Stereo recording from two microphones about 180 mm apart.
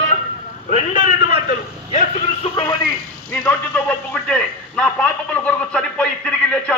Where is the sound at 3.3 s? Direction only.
10° left (ahead or behind).